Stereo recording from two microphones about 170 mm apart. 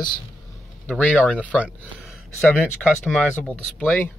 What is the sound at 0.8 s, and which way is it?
Speech, 10° left (ahead or behind).